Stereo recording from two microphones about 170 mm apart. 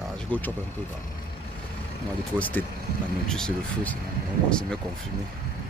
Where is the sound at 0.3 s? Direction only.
10° left (ahead or behind).